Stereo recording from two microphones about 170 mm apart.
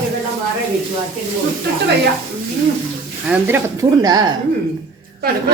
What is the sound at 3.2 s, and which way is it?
Speech, 10° right (ahead or behind).